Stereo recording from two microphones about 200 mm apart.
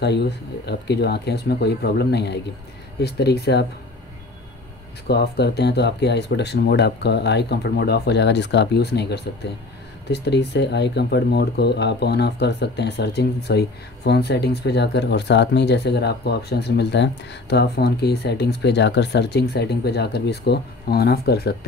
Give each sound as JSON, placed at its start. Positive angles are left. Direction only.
{"t": 0.0, "sound": "speech", "side_deg": 55}
{"t": 5.0, "sound": "speech", "side_deg": 55}